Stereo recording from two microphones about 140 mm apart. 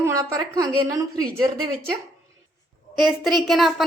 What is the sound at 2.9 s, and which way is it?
Speech, centre (ahead or behind).